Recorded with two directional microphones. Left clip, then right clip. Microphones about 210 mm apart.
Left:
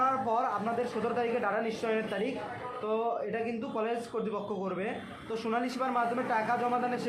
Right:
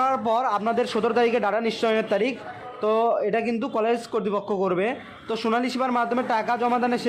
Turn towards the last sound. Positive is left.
turn(degrees=-45)  # may be behind; listen again after turning